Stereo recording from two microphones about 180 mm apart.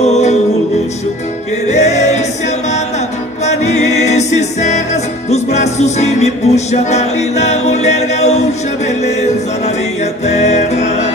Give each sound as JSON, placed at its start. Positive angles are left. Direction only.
{"t": 0.0, "sound": "music", "side_deg": 40}
{"t": 1.7, "sound": "music", "side_deg": 40}
{"t": 3.4, "sound": "music", "side_deg": 40}